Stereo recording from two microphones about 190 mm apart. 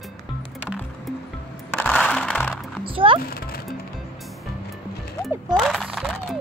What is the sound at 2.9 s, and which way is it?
Music, 30° right (ahead or behind).